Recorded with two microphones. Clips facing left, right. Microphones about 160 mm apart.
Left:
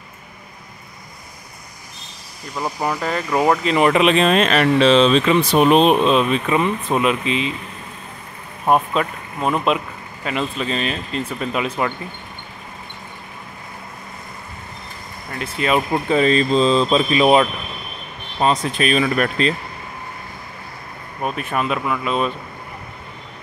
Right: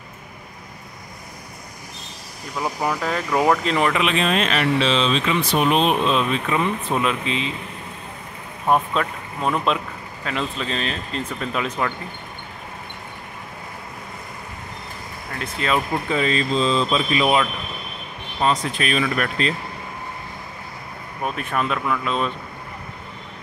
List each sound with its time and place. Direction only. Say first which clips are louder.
2.5 s speech: left 1 dB; centre (ahead or behind)
3.9 s speech: left 6 dB; 35° left (ahead or behind)
5.9 s speech: left 5 dB; 20° left (ahead or behind)
8.6 s speech: left 2 dB; 10° left (ahead or behind)
15.4 s speech: left 3 dB; 15° left (ahead or behind)
16.1 s speech: left 7 dB; 35° left (ahead or behind)
21.2 s speech: left 2 dB; 5° left (ahead or behind)